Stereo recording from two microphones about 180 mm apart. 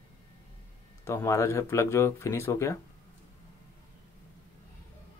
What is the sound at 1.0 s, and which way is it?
Speech, 15° left (ahead or behind).